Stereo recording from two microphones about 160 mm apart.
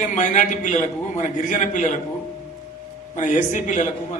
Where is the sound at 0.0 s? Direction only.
50° left (ahead or behind).